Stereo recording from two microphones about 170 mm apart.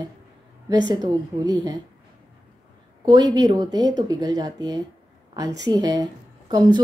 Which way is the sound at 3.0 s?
25° right (ahead or behind).